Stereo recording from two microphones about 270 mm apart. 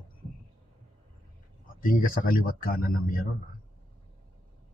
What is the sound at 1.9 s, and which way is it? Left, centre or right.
Speech, left.